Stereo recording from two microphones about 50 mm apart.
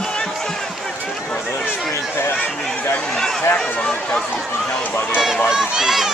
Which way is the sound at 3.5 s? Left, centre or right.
Centre.